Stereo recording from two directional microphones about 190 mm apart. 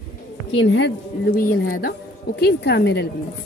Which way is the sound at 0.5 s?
75° left (ahead or behind).